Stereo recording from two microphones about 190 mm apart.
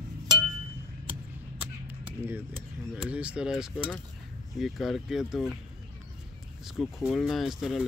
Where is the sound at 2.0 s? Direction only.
10° right (ahead or behind).